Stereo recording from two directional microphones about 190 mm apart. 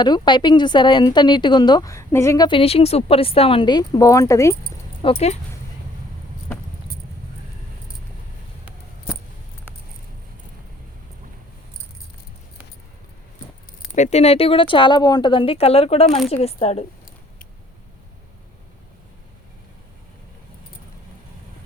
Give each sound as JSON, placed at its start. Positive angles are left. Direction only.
{"t": 0.0, "sound": "speech", "side_deg": 25}
{"t": 5.0, "sound": "speech", "side_deg": 25}
{"t": 13.9, "sound": "speech", "side_deg": 35}